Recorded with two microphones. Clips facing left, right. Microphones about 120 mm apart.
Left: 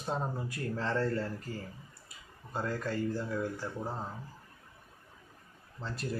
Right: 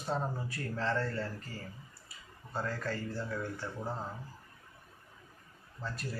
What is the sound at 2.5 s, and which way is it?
Speech, 15° left (ahead or behind).